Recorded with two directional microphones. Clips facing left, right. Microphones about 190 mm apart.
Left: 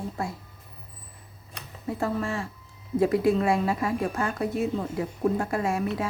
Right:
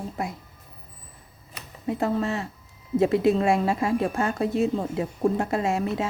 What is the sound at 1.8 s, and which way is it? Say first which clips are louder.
Speech: right 3 dB; 20° right (ahead or behind).